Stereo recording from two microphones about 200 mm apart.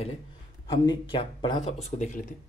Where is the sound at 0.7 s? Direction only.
25° left (ahead or behind); by 2.2 s 40° left (ahead or behind).